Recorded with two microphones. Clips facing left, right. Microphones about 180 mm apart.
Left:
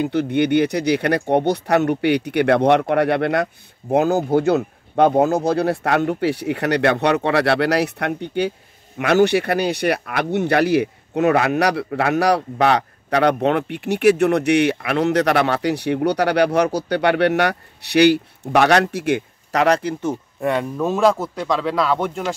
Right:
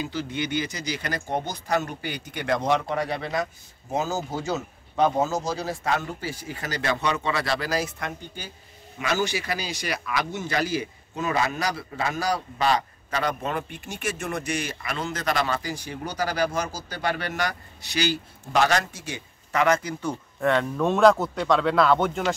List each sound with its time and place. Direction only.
0.0 s speech: 60° left (ahead or behind)
19.5 s speech: 35° left (ahead or behind); by 22.3 s centre (ahead or behind)